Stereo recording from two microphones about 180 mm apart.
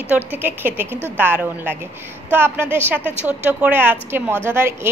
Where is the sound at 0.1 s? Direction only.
10° right (ahead or behind).